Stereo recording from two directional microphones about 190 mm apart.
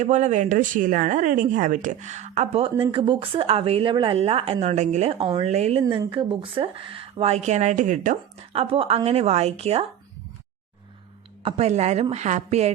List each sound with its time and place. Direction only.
0.0 s speech: 40° right (ahead or behind)
5.8 s speech: 20° right (ahead or behind)
11.4 s speech: 35° right (ahead or behind)